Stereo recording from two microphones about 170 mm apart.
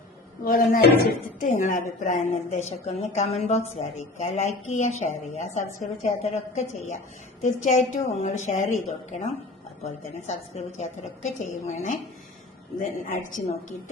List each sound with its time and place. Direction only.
0.4 s a woman's voice: 55° left (ahead or behind)
1.5 s a woman's voice: 45° left (ahead or behind)